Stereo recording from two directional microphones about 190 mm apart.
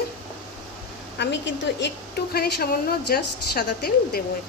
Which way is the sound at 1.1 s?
65° left (ahead or behind).